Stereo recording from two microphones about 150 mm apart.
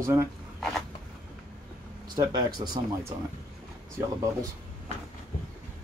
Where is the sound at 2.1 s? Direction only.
30° right (ahead or behind).